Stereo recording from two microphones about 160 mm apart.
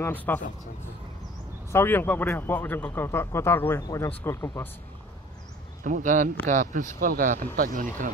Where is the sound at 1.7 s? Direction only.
15° left (ahead or behind).